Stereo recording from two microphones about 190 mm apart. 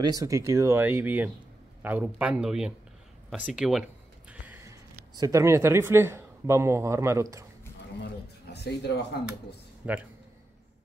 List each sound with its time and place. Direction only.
0.0 s speech: 20° right (ahead or behind)
8.0 s pigeon: 60° left (ahead or behind)
9.8 s speech: 5° right (ahead or behind)